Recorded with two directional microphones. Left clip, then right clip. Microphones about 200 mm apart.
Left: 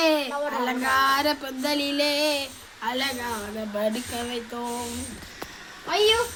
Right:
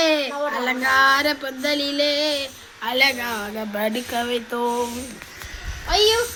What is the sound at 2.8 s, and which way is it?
Speech, 10° right (ahead or behind).